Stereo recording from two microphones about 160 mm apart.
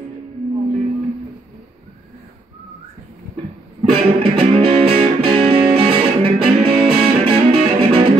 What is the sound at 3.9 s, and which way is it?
Music, 35° right (ahead or behind).